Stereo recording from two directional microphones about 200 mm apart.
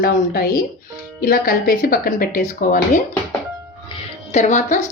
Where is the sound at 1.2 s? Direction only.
45° left (ahead or behind).